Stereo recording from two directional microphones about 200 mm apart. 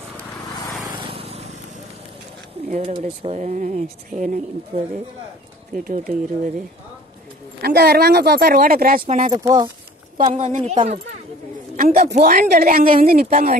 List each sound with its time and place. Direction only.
0.9 s vehicle: 30° right (ahead or behind)
2.7 s speech: 30° right (ahead or behind)
5.9 s speech: 40° right (ahead or behind)
7.6 s a woman's voice: 50° right (ahead or behind)
9.3 s speech: 20° right (ahead or behind)
10.1 s speech: 40° right (ahead or behind)
11.7 s a woman's voice: 45° right (ahead or behind)